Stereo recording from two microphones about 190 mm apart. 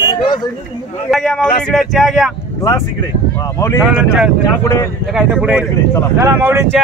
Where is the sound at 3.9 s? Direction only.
5° right (ahead or behind).